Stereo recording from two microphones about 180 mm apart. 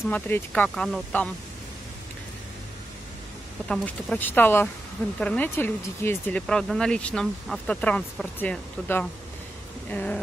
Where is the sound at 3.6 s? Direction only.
10° left (ahead or behind).